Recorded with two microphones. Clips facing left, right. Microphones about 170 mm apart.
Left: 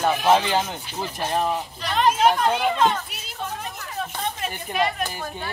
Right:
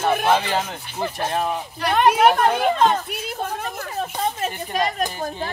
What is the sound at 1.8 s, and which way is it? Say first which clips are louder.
Speech: right 4 dB; 60° right (ahead or behind).